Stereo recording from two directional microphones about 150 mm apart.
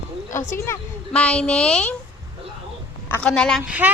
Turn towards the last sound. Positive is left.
turn(degrees=-10)  # may be behind; listen again after turning